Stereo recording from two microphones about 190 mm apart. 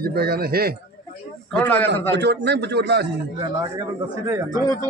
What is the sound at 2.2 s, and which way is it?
Speech, 65° right (ahead or behind).